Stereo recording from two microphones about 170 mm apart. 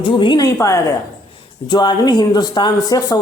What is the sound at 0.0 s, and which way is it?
Speech, 30° left (ahead or behind).